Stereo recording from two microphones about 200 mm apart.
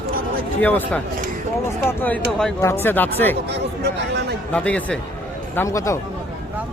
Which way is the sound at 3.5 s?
60° right (ahead or behind).